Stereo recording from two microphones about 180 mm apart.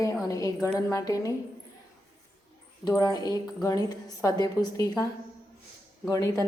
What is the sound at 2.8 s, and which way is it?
A woman's voice, 20° left (ahead or behind).